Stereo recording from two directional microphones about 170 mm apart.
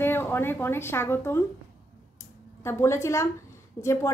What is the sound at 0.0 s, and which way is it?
Speech, 15° left (ahead or behind).